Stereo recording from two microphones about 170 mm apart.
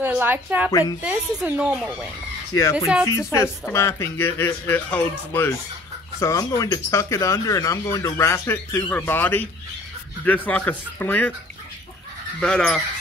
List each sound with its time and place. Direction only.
0.0 s speech: 10° right (ahead or behind)
0.7 s a woman's voice: 20° left (ahead or behind)
1.0 s speech: 5° right (ahead or behind)
2.5 s a woman's voice: 20° left (ahead or behind)
12.4 s speech: 5° left (ahead or behind)